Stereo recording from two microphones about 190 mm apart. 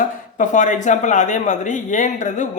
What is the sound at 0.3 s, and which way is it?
A woman's voice, 40° left (ahead or behind).